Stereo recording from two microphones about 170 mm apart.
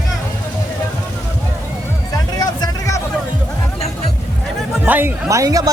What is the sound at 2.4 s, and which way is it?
Music, 20° left (ahead or behind).